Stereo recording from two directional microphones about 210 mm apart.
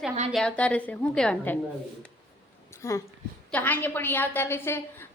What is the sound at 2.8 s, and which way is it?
A woman's voice, 15° left (ahead or behind).